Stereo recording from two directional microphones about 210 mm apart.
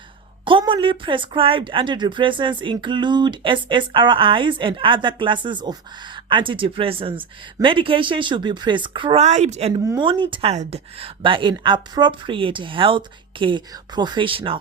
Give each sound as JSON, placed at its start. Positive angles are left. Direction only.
{"t": 0.4, "sound": "speech", "side_deg": -25}
{"t": 9.8, "sound": "speech", "side_deg": -20}